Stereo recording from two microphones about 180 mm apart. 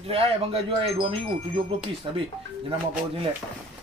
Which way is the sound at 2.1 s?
30° right (ahead or behind).